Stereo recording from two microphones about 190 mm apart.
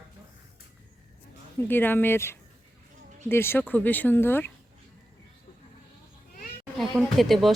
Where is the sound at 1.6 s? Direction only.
10° left (ahead or behind).